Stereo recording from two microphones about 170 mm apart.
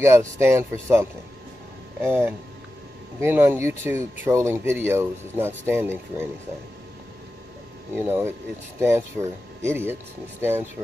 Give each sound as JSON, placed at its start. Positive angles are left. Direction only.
{"t": 0.0, "sound": "speech", "side_deg": -15}
{"t": 7.9, "sound": "speech", "side_deg": -15}